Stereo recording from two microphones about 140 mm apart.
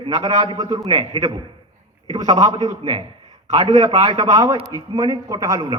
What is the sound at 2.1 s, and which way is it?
Speech, 25° right (ahead or behind).